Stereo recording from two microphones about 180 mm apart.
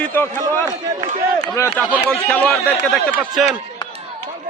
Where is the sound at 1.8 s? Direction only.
10° right (ahead or behind).